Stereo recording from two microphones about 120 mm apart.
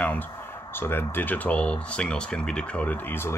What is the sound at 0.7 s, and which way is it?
Speech, 20° left (ahead or behind).